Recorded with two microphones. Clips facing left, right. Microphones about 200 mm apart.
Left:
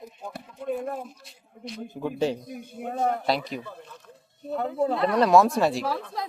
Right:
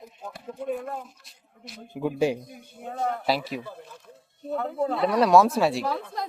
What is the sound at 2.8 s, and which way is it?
Speech, 80° left.